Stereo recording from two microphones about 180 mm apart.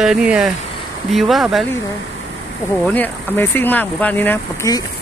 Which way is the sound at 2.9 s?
10° left (ahead or behind).